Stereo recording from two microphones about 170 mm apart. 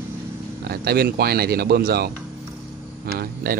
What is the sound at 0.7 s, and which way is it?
Speech, 65° right (ahead or behind).